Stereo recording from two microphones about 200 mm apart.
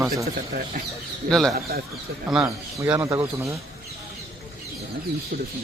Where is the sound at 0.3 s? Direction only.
45° right (ahead or behind).